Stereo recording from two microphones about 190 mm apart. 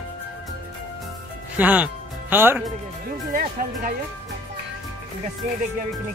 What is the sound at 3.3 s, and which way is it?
Speech, 45° right (ahead or behind).